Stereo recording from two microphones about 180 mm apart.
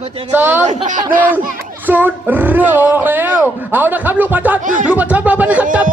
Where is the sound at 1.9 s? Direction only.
10° right (ahead or behind).